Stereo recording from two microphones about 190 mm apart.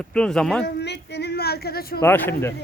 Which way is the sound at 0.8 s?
65° left (ahead or behind).